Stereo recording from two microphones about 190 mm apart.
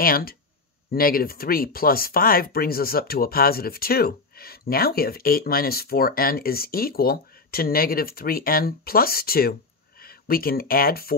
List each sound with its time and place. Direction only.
0.0 s speech: 50° left (ahead or behind)